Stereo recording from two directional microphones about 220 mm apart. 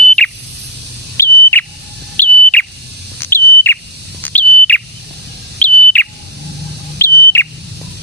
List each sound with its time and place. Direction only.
0.2 s smoke detector: 5° left (ahead or behind)
2.1 s bird: 10° left (ahead or behind)